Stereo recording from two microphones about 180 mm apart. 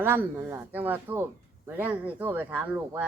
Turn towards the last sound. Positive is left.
turn(degrees=-10)  # may be behind; listen again after turning